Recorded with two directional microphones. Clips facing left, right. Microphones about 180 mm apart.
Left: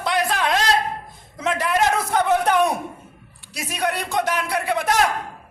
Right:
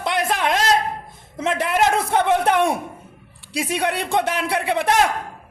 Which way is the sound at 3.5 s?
30° right (ahead or behind).